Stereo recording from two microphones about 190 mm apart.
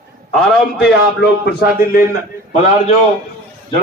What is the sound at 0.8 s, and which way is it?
Speech, 60° left (ahead or behind).